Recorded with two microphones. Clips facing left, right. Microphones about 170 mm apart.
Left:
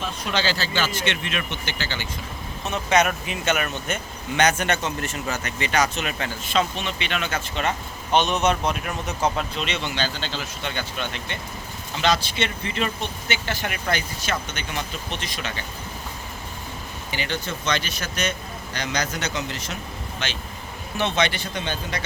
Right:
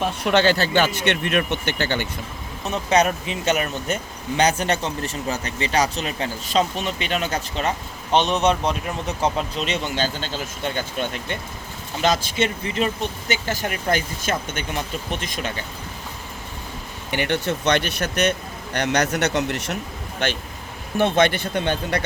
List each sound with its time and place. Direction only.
0.0 s speech: 60° right (ahead or behind)
2.9 s speech: 30° right (ahead or behind); by 15.5 s 45° right (ahead or behind)
17.1 s speech: 60° right (ahead or behind)